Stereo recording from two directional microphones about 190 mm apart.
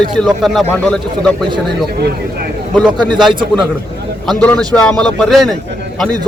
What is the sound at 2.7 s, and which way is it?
Speech, 20° right (ahead or behind).